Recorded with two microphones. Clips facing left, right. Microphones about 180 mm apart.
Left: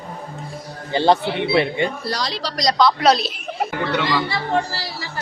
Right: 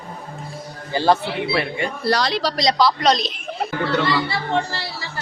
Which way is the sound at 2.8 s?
Centre (ahead or behind).